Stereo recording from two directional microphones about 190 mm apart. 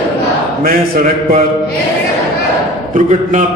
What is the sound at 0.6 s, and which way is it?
Speech, 50° right (ahead or behind).